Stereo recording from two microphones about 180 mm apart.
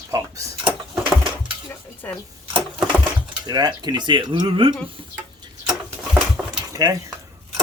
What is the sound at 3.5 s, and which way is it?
Speech, 25° right (ahead or behind).